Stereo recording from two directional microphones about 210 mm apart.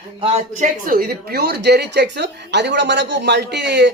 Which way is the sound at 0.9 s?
45° right (ahead or behind).